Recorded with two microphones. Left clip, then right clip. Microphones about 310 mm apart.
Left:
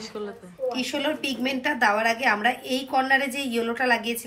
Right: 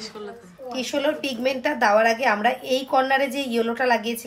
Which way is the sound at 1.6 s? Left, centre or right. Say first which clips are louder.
Right 3 dB; right.